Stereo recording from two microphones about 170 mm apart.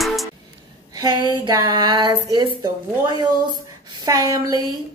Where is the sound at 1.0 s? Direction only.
25° right (ahead or behind).